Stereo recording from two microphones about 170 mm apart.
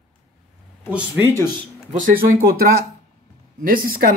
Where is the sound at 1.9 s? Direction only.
40° right (ahead or behind).